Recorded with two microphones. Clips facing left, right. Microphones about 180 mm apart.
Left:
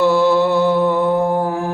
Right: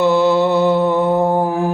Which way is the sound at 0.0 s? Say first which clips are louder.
Even; 20° right (ahead or behind).